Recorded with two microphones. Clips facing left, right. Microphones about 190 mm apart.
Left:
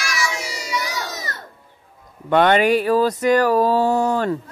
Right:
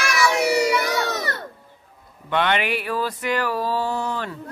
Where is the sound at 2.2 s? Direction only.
45° left (ahead or behind).